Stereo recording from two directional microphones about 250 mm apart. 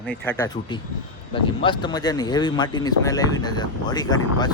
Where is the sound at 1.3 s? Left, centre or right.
Centre.